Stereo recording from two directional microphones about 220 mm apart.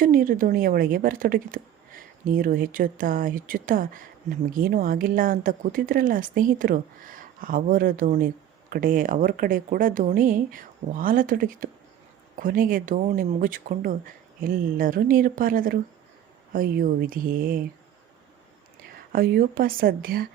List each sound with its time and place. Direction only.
0.0 s speech: 40° right (ahead or behind)
19.1 s speech: 45° right (ahead or behind)